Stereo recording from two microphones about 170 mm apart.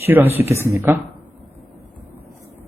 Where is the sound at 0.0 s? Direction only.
10° right (ahead or behind).